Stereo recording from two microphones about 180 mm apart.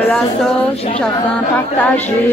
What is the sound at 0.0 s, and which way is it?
Speech, 5° left (ahead or behind).